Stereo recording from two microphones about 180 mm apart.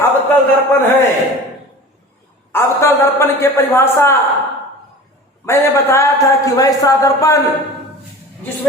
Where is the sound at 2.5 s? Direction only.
15° left (ahead or behind).